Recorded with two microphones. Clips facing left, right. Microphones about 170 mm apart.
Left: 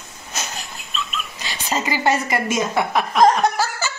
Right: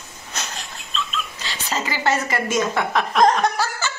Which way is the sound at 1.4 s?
15° left (ahead or behind).